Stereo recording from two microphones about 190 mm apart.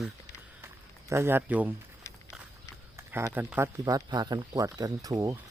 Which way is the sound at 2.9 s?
15° right (ahead or behind).